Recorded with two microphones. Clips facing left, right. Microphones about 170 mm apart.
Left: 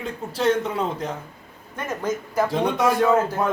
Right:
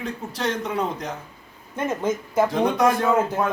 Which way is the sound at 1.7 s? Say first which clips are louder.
Right 2 dB; 20° right (ahead or behind).